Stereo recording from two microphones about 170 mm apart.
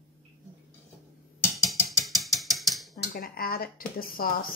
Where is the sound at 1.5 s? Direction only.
Centre (ahead or behind).